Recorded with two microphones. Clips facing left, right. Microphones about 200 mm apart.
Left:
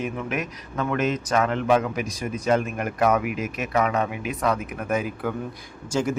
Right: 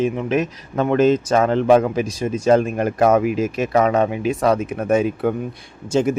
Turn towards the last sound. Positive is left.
turn(degrees=-20)  # may be behind; listen again after turning